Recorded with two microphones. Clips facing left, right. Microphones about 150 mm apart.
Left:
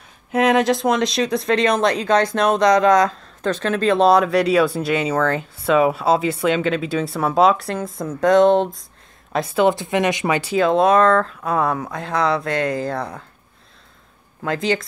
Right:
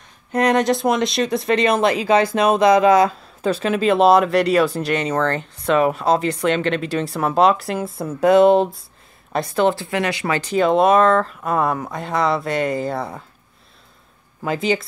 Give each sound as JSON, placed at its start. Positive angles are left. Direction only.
{"t": 0.3, "sound": "speech", "side_deg": 5}
{"t": 9.3, "sound": "speech", "side_deg": 5}
{"t": 9.8, "sound": "speech", "side_deg": 20}
{"t": 10.5, "sound": "speech", "side_deg": 0}
{"t": 14.4, "sound": "speech", "side_deg": -5}